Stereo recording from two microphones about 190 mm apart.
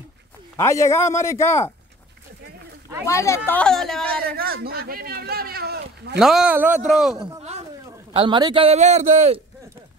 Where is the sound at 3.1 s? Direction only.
15° left (ahead or behind).